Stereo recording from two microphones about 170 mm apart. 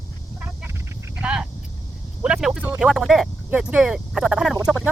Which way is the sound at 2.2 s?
5° right (ahead or behind).